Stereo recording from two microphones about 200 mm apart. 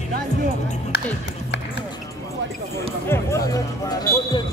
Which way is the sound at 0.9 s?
55° left (ahead or behind).